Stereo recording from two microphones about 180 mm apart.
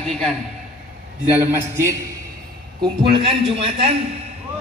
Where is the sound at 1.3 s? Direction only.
10° right (ahead or behind).